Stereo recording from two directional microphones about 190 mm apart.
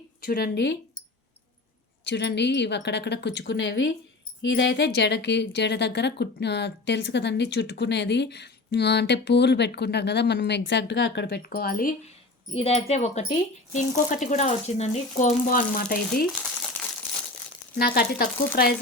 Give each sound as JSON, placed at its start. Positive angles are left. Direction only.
{"t": 0.2, "sound": "a woman's voice", "side_deg": 55}
{"t": 2.0, "sound": "a woman's voice", "side_deg": 65}
{"t": 12.5, "sound": "speech", "side_deg": 30}
{"t": 17.7, "sound": "speech", "side_deg": 55}